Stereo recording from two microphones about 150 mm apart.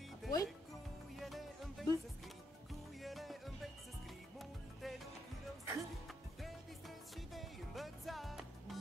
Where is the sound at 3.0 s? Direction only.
Centre (ahead or behind).